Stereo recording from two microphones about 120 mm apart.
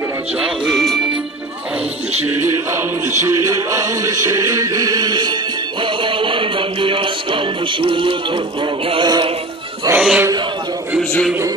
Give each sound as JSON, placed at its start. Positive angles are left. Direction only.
{"t": 0.4, "sound": "speech", "side_deg": 0}
{"t": 2.2, "sound": "music", "side_deg": -20}
{"t": 9.9, "sound": "a sound", "side_deg": -10}
{"t": 11.0, "sound": "a man's voice", "side_deg": 0}